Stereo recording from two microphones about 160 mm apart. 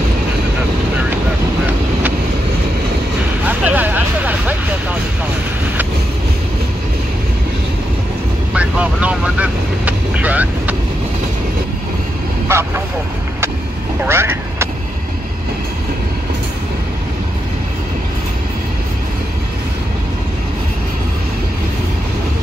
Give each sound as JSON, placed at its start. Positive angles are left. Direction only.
{"t": 3.4, "sound": "vehicle", "side_deg": -10}
{"t": 8.5, "sound": "vehicle", "side_deg": -10}
{"t": 12.4, "sound": "vehicle", "side_deg": -15}
{"t": 14.0, "sound": "vehicle", "side_deg": -15}